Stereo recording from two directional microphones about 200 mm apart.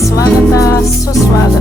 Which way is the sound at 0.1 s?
15° left (ahead or behind).